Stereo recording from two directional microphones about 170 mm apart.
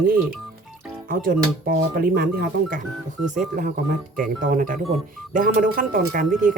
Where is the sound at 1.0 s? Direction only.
55° right (ahead or behind).